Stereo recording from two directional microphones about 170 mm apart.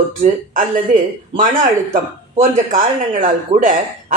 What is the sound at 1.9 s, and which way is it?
Speech, 50° right (ahead or behind).